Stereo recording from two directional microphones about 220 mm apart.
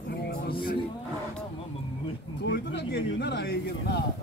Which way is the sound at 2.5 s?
50° left (ahead or behind).